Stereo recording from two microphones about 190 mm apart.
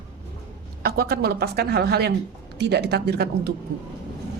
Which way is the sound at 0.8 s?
55° right (ahead or behind).